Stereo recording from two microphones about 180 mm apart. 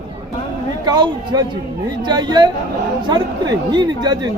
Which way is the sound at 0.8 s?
25° right (ahead or behind).